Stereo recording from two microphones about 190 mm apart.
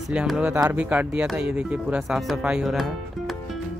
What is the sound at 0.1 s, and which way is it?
Speech, 5° right (ahead or behind).